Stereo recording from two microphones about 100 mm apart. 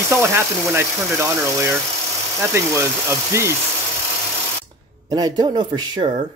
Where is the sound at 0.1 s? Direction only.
25° right (ahead or behind).